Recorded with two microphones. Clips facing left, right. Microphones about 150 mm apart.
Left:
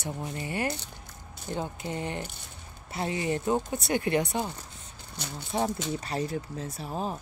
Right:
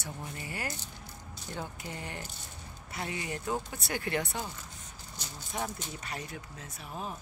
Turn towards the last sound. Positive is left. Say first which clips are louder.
# left 7 dB
turn(degrees=35)  # may be behind; listen again after turning